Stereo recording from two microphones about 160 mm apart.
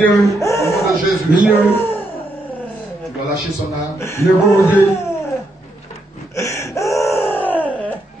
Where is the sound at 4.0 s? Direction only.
15° left (ahead or behind).